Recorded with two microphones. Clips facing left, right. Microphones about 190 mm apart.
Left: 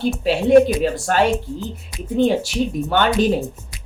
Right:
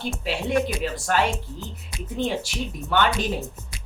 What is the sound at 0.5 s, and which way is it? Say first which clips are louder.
Speech: left 12 dB; 30° left (ahead or behind).